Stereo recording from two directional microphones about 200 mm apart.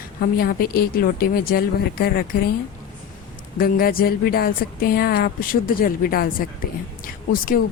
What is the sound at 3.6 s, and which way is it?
Speech, 50° left (ahead or behind).